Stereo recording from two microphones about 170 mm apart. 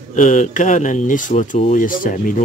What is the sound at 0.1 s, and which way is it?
Speech, 45° left (ahead or behind).